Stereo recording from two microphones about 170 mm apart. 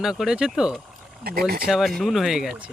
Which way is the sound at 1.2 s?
65° right (ahead or behind).